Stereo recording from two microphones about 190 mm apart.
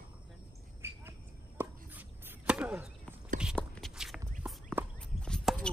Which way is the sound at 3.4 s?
5° left (ahead or behind).